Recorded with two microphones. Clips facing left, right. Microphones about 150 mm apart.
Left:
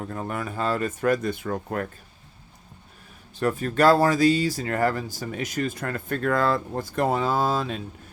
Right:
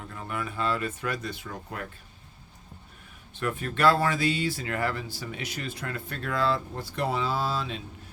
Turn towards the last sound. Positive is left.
turn(degrees=50)  # may be behind; listen again after turning